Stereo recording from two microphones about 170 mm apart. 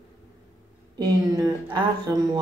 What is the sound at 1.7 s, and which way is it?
Speech, 25° right (ahead or behind).